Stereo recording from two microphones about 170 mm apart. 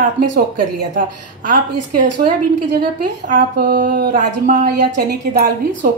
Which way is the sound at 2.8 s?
55° right (ahead or behind).